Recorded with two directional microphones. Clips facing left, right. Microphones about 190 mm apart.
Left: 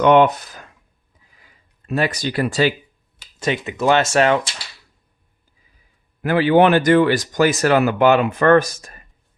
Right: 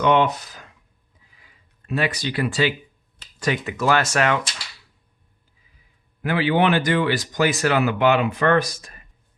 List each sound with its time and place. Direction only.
0.0 s speech: 50° left (ahead or behind)
1.9 s speech: 45° left (ahead or behind)
3.4 s speech: 25° left (ahead or behind)
6.2 s speech: 45° left (ahead or behind)